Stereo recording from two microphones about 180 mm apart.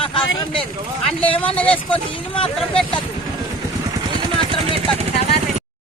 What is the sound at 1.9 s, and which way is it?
Speech, 30° left (ahead or behind).